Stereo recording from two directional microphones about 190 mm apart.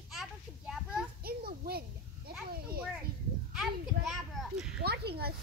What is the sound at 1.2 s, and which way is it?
Children playing, 55° right (ahead or behind).